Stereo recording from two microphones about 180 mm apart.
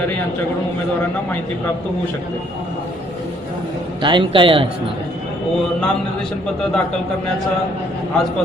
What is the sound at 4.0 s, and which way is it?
Speech, 25° right (ahead or behind).